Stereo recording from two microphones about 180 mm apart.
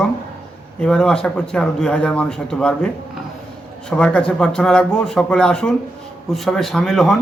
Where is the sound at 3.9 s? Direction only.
5° left (ahead or behind).